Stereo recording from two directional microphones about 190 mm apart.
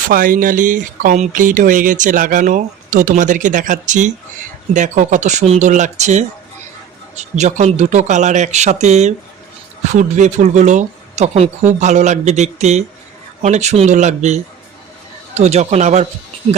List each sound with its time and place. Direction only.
0.1 s speech: 45° right (ahead or behind)